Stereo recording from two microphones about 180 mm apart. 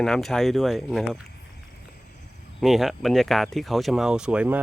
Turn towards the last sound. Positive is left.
turn(degrees=-5)  # may be behind; listen again after turning